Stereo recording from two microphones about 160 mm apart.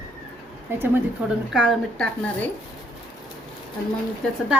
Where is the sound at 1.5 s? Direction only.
5° right (ahead or behind).